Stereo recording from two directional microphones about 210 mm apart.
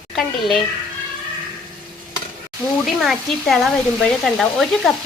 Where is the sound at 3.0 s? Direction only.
Centre (ahead or behind).